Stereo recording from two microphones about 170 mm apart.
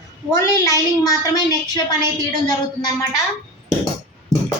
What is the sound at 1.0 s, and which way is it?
Speech, 20° left (ahead or behind).